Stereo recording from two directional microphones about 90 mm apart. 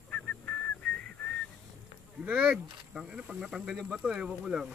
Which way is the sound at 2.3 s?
10° right (ahead or behind).